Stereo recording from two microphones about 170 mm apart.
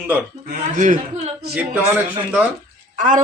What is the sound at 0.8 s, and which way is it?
Speech, 45° right (ahead or behind).